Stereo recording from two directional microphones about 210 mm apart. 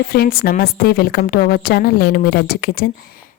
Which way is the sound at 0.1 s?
45° left (ahead or behind).